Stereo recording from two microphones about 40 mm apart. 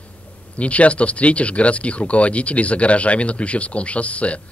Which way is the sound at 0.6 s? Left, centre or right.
Left.